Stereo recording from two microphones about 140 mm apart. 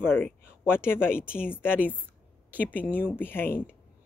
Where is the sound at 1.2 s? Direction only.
5° right (ahead or behind).